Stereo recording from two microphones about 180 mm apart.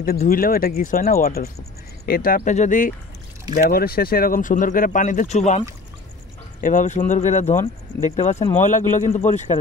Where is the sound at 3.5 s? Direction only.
55° left (ahead or behind).